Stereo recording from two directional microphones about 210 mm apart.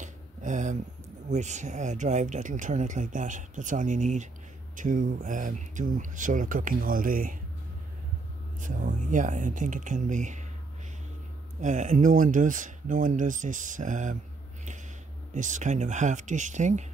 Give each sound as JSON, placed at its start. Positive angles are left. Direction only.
{"t": 0.0, "sound": "a sound", "side_deg": -35}
{"t": 1.3, "sound": "speech", "side_deg": -35}
{"t": 8.5, "sound": "speech", "side_deg": -40}
{"t": 11.6, "sound": "speech", "side_deg": -35}
{"t": 15.3, "sound": "speech", "side_deg": -35}